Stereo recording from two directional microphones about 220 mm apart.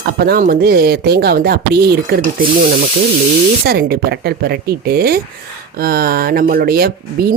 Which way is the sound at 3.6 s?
45° right (ahead or behind).